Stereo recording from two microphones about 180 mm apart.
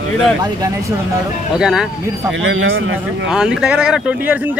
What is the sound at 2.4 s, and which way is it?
Speech, 90° right.